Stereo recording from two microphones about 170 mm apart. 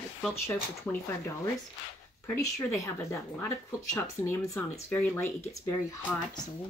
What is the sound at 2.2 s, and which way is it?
Speech, 15° left (ahead or behind).